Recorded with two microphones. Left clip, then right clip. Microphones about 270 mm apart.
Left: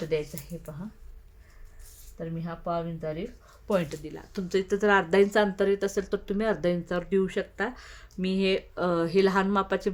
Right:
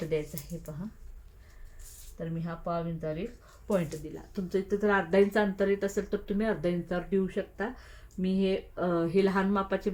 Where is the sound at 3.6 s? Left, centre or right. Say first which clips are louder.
Left 3 dB; left.